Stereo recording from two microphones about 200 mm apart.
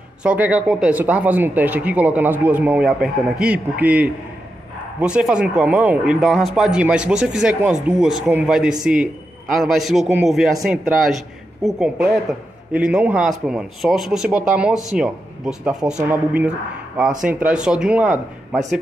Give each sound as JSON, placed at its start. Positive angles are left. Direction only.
{"t": 0.2, "sound": "speech", "side_deg": -5}